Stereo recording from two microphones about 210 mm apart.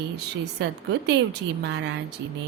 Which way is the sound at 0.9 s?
55° right (ahead or behind).